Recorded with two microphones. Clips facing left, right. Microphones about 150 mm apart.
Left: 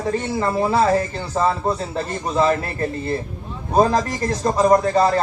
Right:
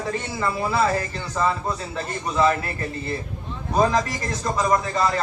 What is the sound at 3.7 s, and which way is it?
A man's voice, 35° left (ahead or behind).